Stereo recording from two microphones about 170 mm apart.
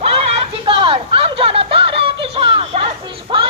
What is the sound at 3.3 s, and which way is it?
Music, 30° right (ahead or behind).